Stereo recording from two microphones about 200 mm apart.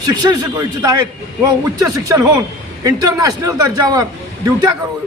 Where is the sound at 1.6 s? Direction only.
15° right (ahead or behind).